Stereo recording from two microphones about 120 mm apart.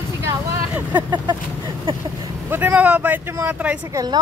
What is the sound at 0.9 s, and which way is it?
Speech, 35° right (ahead or behind).